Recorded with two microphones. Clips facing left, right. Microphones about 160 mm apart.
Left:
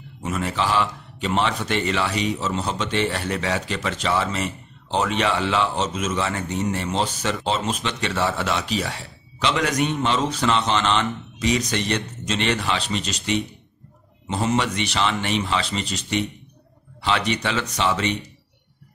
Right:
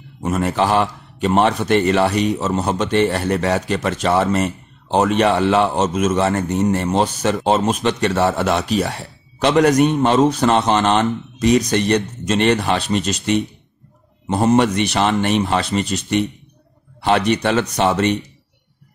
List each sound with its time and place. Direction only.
0.2 s a man's voice: 45° right (ahead or behind)